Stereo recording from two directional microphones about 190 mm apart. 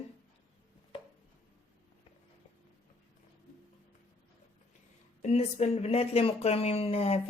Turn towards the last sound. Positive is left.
turn(degrees=30)  # may be behind; listen again after turning